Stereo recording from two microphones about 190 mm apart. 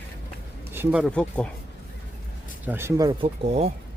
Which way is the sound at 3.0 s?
30° right (ahead or behind).